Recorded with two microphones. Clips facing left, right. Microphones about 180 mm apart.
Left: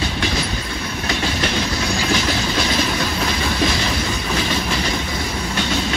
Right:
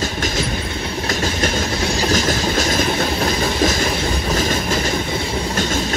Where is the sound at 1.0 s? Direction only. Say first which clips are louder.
Right 1 dB; 45° right (ahead or behind).